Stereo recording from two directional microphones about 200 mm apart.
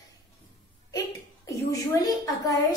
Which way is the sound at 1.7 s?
15° left (ahead or behind).